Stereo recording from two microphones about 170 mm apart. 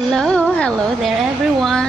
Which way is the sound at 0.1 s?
5° left (ahead or behind).